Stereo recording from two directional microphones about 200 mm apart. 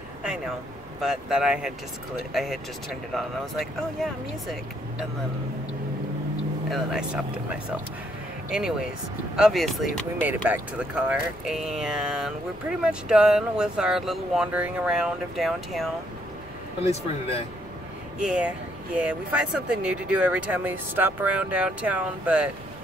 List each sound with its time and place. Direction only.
1.0 s speech: 5° right (ahead or behind)
6.7 s speech: centre (ahead or behind)
8.5 s speech: 5° right (ahead or behind)
16.8 s speech: 30° left (ahead or behind)
18.2 s speech: 5° right (ahead or behind)